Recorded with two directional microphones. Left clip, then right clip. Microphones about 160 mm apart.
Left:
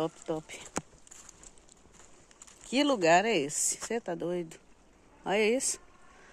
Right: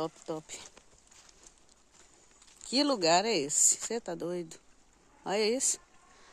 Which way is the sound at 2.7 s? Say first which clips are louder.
Left 2 dB; 40° right (ahead or behind).